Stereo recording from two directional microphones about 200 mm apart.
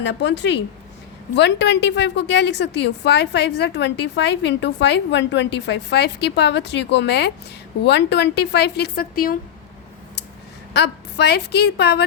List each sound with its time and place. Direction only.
0.0 s a woman's voice: 60° left (ahead or behind); by 9.4 s 45° left (ahead or behind)
10.8 s a woman's voice: 55° left (ahead or behind)